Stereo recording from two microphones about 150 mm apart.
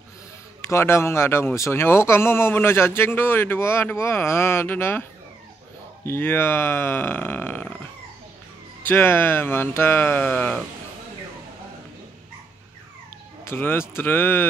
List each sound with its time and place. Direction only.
0.6 s a man's voice: 20° left (ahead or behind)
6.0 s a man's voice: 15° left (ahead or behind)
8.8 s a man's voice: 15° left (ahead or behind)
13.4 s a man's voice: 15° left (ahead or behind)